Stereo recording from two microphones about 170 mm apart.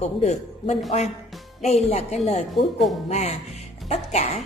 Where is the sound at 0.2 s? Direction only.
40° left (ahead or behind).